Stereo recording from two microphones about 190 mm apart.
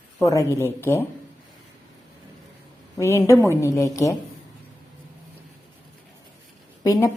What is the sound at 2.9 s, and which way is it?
Speech, 15° left (ahead or behind).